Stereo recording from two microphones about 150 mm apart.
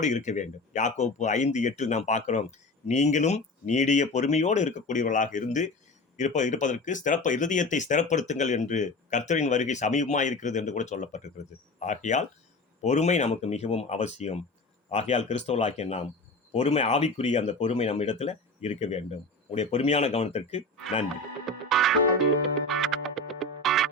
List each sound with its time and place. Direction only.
0.0 s speech: 55° left (ahead or behind)
21.4 s music: centre (ahead or behind)